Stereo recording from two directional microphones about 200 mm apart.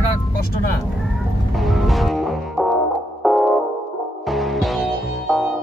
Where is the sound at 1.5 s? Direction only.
Centre (ahead or behind).